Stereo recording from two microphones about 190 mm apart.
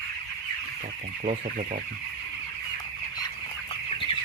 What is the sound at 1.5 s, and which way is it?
Speech, 45° right (ahead or behind).